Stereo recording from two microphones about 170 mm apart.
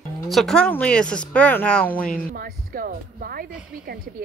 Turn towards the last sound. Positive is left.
turn(degrees=-60)  # may be behind; listen again after turning